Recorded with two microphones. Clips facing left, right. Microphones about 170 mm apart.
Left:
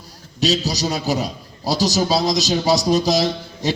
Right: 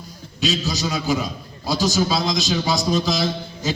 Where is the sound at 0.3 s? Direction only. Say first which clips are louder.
Left 3 dB; 35° left (ahead or behind).